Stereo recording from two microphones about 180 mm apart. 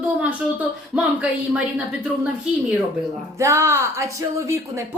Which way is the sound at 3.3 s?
15° right (ahead or behind).